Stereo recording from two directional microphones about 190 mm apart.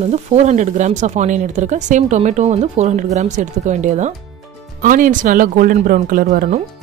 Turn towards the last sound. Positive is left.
turn(degrees=-45)  # may be behind; listen again after turning